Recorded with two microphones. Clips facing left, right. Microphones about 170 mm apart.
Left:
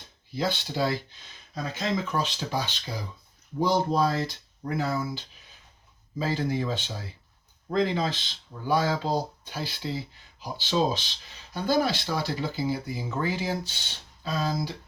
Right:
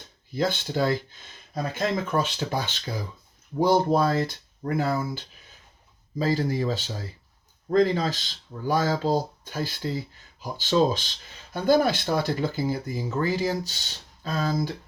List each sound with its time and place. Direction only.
0.3 s speech: 50° right (ahead or behind)
6.1 s speech: 40° right (ahead or behind)